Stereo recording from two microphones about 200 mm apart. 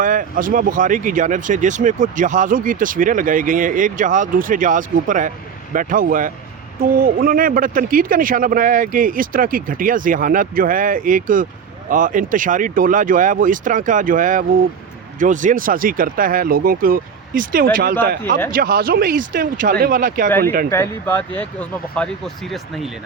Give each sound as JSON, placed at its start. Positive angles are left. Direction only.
{"t": 0.0, "sound": "speech", "side_deg": -40}
{"t": 20.7, "sound": "speech", "side_deg": 10}